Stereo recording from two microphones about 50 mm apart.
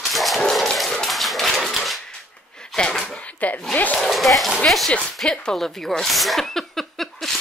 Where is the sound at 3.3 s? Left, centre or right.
Left.